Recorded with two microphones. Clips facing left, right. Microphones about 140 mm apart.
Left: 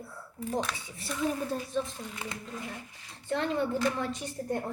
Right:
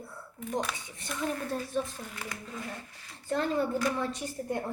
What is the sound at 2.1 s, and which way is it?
Speech, 20° left (ahead or behind).